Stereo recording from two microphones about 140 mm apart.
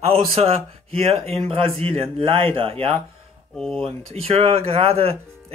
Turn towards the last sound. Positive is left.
turn(degrees=-45)  # may be behind; listen again after turning